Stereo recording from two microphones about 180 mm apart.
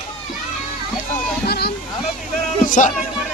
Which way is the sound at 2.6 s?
45° left (ahead or behind).